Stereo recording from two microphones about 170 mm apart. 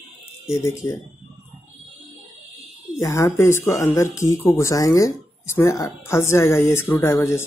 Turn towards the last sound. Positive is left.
turn(degrees=15)  # may be behind; listen again after turning